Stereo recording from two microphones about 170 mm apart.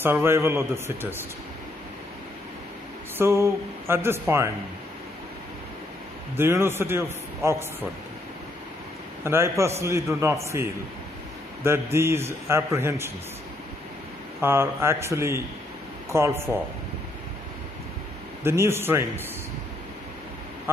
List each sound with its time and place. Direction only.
0.0 s a man's voice: 15° right (ahead or behind)
3.2 s a man's voice: 15° right (ahead or behind)
6.3 s a man's voice: 15° right (ahead or behind)
9.2 s a man's voice: 15° right (ahead or behind)
14.4 s a man's voice: 15° right (ahead or behind)
18.4 s a man's voice: 15° right (ahead or behind)